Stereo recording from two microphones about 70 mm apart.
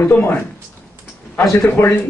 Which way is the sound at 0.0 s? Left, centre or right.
Left.